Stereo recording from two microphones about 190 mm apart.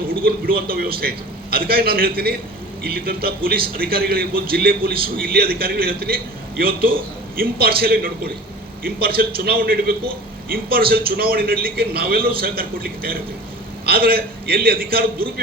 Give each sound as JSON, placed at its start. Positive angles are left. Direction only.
{"t": 0.3, "sound": "a man's voice", "side_deg": -50}